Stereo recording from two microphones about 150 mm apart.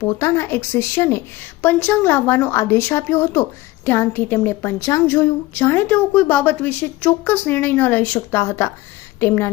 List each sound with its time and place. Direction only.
0.0 s a woman's voice: 20° left (ahead or behind)